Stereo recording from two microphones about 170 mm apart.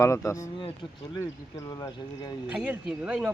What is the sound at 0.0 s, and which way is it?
Speech, 15° left (ahead or behind).